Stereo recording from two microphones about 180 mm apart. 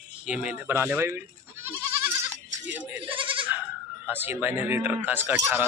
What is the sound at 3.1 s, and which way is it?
Goat, 30° right (ahead or behind).